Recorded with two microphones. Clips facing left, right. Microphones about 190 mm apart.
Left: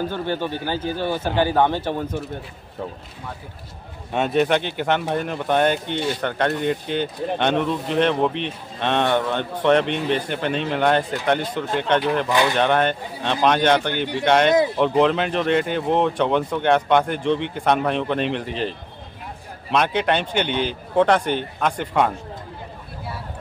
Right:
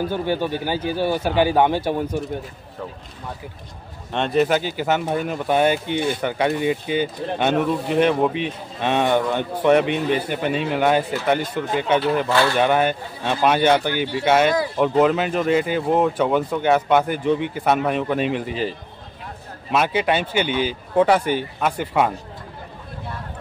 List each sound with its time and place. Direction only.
0.0 s speech: 10° right (ahead or behind)
4.1 s speech: 5° left (ahead or behind)
12.3 s speech: 15° left (ahead or behind)
12.5 s speech: 5° right (ahead or behind)